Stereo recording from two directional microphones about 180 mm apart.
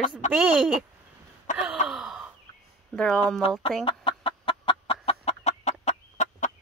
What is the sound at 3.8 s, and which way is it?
Chicken, 30° left (ahead or behind).